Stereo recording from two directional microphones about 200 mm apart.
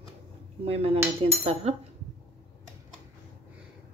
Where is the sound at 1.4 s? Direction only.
30° right (ahead or behind).